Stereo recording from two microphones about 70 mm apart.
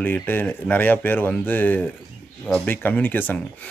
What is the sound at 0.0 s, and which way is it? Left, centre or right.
Speech, left.